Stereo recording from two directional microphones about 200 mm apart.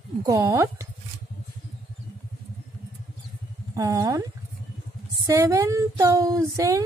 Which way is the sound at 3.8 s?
15° right (ahead or behind).